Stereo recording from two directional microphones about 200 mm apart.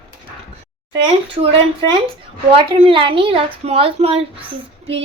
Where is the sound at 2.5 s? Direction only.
25° right (ahead or behind).